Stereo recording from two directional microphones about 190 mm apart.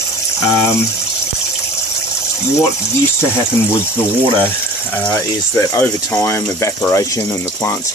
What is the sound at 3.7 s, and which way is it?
Speech, 10° left (ahead or behind).